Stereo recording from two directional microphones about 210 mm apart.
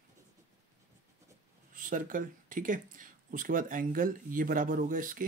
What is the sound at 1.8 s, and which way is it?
Speech, 40° right (ahead or behind).